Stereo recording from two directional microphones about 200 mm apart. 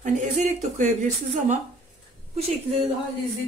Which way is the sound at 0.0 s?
40° right (ahead or behind).